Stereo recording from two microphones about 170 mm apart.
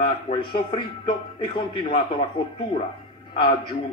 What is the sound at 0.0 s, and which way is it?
A man's voice, 30° left (ahead or behind).